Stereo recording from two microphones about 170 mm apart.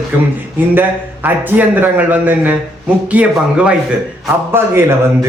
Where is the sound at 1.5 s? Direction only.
10° right (ahead or behind).